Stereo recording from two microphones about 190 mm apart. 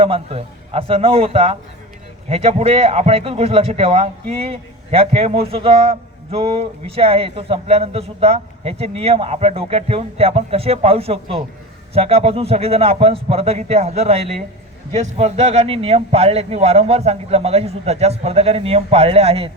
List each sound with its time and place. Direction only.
0.0 s a man's voice: 30° right (ahead or behind)